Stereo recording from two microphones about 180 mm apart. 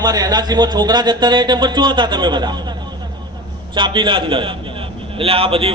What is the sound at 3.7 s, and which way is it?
A man's voice, 25° right (ahead or behind).